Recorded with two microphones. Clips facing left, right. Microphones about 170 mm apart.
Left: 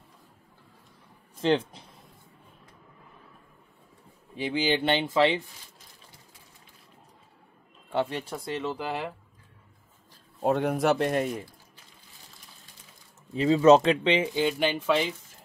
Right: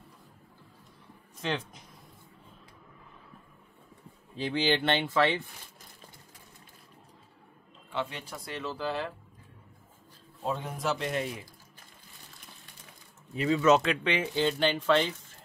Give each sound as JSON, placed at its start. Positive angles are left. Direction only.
{"t": 1.4, "sound": "speech", "side_deg": 30}
{"t": 4.4, "sound": "speech", "side_deg": 10}
{"t": 7.9, "sound": "speech", "side_deg": 50}
{"t": 8.3, "sound": "speech", "side_deg": 20}
{"t": 10.4, "sound": "a man's voice", "side_deg": 65}
{"t": 13.3, "sound": "speech", "side_deg": 30}
{"t": 14.0, "sound": "speech", "side_deg": 20}